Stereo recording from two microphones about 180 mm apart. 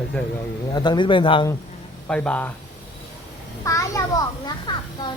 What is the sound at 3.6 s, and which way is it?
A child's voice, 20° left (ahead or behind).